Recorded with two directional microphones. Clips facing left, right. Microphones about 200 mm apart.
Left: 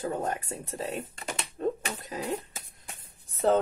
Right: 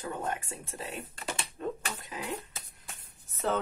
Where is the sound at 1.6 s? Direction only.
40° left (ahead or behind).